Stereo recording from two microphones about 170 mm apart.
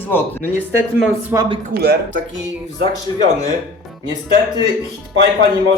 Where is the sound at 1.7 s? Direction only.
70° right (ahead or behind).